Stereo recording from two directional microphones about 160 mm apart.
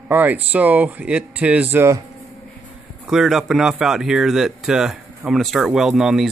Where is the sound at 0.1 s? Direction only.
10° right (ahead or behind).